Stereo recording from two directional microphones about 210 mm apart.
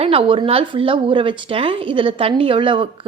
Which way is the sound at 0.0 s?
25° right (ahead or behind).